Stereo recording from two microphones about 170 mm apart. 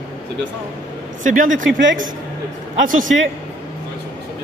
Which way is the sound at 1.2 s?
50° right (ahead or behind).